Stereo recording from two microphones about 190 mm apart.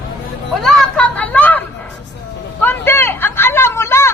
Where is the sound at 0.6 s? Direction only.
Centre (ahead or behind).